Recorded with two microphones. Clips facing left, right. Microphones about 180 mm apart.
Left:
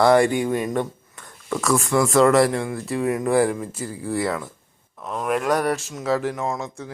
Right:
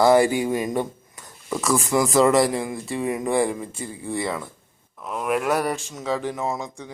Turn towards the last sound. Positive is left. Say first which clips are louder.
# left 1 dB
turn(degrees=0)  # may be behind; listen again after turning